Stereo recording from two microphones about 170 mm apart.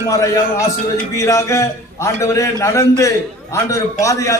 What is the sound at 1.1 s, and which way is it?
A man's voice, 15° left (ahead or behind).